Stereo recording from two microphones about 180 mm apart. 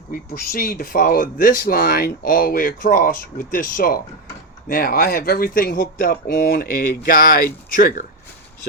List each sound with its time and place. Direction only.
0.1 s speech: 55° left (ahead or behind)